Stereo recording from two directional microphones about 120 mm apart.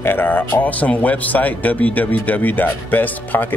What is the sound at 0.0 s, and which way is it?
Speech, 15° left (ahead or behind).